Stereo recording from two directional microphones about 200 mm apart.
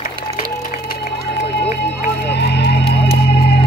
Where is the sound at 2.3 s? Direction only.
60° left (ahead or behind).